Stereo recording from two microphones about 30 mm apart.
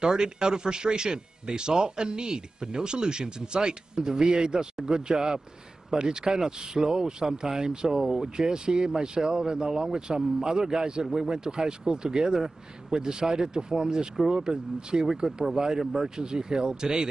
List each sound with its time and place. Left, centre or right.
0.0 s speech: right